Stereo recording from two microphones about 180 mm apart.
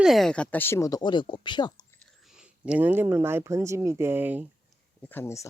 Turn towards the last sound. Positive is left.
turn(degrees=15)  # may be behind; listen again after turning